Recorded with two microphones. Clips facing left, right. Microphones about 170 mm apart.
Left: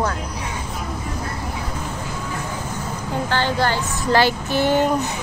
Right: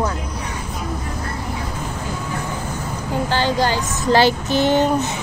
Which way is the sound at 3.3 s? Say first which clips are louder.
Right 1 dB; 15° right (ahead or behind).